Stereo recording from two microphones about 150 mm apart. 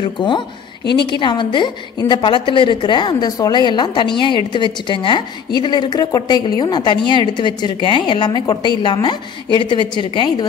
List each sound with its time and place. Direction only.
0.0 s a woman's voice: 30° left (ahead or behind)